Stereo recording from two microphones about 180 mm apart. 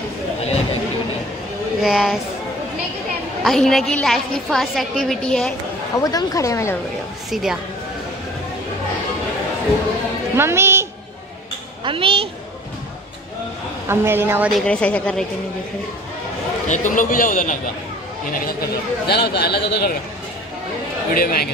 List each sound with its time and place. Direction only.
1.8 s a woman's voice: 5° right (ahead or behind)
3.4 s a woman's voice: centre (ahead or behind)
5.9 s speech: 20° left (ahead or behind)
10.3 s a woman's voice: 15° right (ahead or behind)
11.8 s a woman's voice: 30° right (ahead or behind)
13.8 s speech: 15° right (ahead or behind)
14.5 s speech: 5° left (ahead or behind)
16.6 s a man's voice: 40° left (ahead or behind)
18.4 s speech: 60° left (ahead or behind)
21.1 s speech: 55° left (ahead or behind)